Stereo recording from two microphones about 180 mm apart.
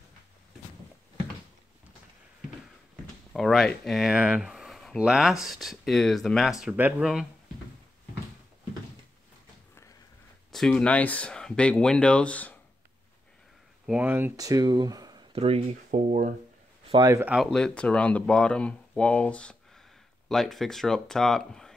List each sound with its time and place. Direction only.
3.3 s speech: centre (ahead or behind)
10.5 s speech: 5° left (ahead or behind)
13.8 s speech: 10° right (ahead or behind); by 16.3 s 45° right (ahead or behind)
17.0 s speech: 15° right (ahead or behind)
17.4 s speech: centre (ahead or behind)